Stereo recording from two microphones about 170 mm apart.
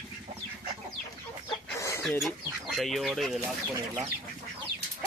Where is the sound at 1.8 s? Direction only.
15° left (ahead or behind).